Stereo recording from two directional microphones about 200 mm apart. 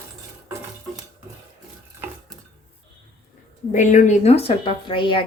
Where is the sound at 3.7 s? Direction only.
40° left (ahead or behind).